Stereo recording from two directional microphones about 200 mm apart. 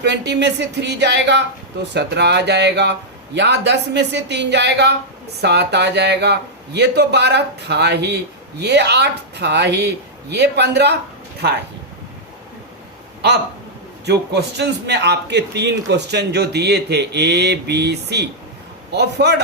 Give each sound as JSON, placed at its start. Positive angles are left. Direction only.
{"t": 0.0, "sound": "a man's voice", "side_deg": -60}
{"t": 14.0, "sound": "a man's voice", "side_deg": -55}